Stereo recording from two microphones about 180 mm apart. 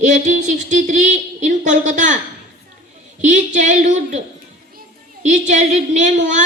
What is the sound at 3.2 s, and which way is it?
Speech, 45° right (ahead or behind).